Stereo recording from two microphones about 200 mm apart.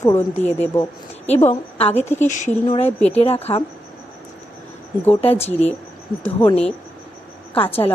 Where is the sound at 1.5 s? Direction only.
30° left (ahead or behind).